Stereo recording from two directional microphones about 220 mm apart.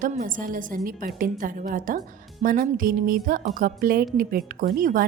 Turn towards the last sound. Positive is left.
turn(degrees=-40)  # may be behind; listen again after turning